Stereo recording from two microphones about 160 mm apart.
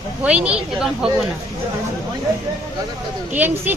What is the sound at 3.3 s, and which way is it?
Speech, 10° right (ahead or behind).